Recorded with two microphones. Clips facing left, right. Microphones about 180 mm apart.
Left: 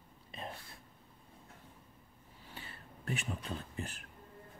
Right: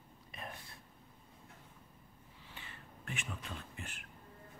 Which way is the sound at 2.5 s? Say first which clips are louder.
Left 3 dB; 35° left (ahead or behind).